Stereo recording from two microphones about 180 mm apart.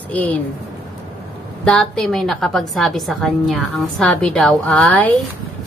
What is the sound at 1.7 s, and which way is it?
A woman's voice, 5° left (ahead or behind).